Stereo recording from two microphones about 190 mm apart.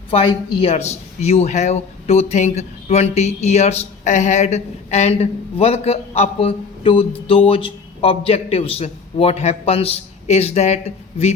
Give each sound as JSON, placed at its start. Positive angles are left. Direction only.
{"t": 0.1, "sound": "speech", "side_deg": 30}